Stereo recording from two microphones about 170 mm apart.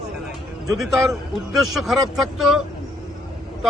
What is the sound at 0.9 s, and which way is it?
A man's voice, centre (ahead or behind).